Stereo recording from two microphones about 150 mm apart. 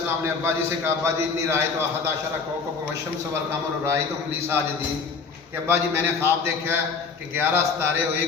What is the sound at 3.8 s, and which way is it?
Speech, 15° right (ahead or behind).